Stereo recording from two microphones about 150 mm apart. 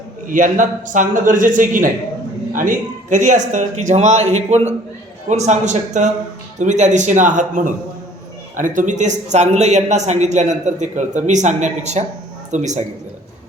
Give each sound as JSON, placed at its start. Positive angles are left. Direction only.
{"t": 0.3, "sound": "a man's voice", "side_deg": -60}